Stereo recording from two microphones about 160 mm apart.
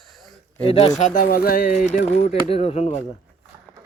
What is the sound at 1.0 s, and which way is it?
Speech, 65° left (ahead or behind).